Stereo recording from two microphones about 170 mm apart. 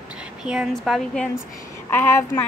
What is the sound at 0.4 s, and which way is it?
Speech, 5° right (ahead or behind).